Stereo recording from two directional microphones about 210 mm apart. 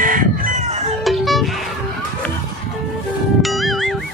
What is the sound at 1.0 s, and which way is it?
Music, centre (ahead or behind).